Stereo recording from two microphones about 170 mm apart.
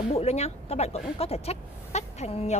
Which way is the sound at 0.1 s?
35° left (ahead or behind).